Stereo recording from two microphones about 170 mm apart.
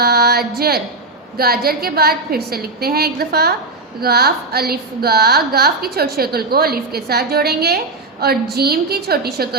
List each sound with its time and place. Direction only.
0.0 s music: 70° right (ahead or behind)
1.4 s a woman's voice: 65° right (ahead or behind)